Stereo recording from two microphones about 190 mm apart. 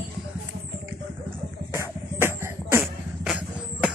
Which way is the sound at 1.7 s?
10° right (ahead or behind).